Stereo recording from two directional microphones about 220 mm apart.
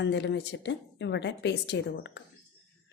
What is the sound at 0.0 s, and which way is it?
A woman's voice, 50° left (ahead or behind).